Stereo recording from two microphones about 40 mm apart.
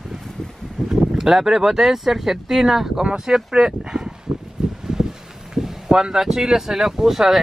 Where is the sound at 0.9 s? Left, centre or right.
Centre.